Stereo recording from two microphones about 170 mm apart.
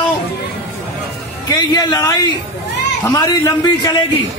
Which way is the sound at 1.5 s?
25° left (ahead or behind).